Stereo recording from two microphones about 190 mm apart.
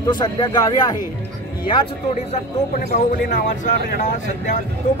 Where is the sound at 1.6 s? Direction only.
35° left (ahead or behind).